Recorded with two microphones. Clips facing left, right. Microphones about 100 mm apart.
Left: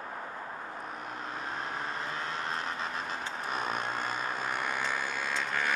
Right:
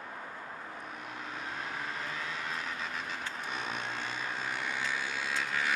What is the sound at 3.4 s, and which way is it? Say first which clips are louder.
Vehicle: left 6 dB; 45° left (ahead or behind).